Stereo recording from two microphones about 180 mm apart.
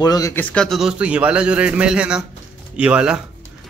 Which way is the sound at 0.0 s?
20° left (ahead or behind).